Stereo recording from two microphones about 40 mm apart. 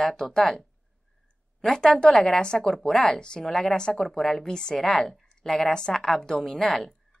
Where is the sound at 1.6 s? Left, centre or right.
Centre.